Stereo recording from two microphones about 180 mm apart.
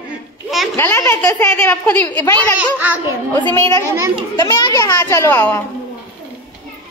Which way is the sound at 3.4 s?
15° left (ahead or behind).